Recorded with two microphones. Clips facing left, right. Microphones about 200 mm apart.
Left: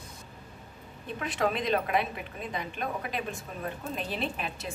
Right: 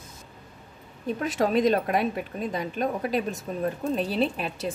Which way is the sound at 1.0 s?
40° right (ahead or behind).